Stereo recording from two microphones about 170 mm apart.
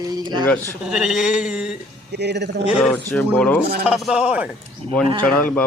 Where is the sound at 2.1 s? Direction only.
80° right.